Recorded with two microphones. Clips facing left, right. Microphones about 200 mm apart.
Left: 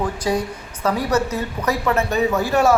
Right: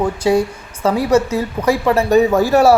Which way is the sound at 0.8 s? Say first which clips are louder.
Right 6 dB; 30° right (ahead or behind).